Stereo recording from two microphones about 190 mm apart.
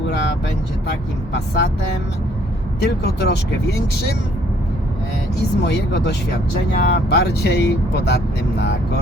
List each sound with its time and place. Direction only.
1.3 s speech: 60° left (ahead or behind)
2.8 s speech: 60° left (ahead or behind)
5.6 s speech: 65° left (ahead or behind)